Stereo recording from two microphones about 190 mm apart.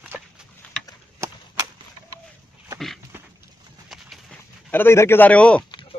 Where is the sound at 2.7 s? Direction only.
Centre (ahead or behind).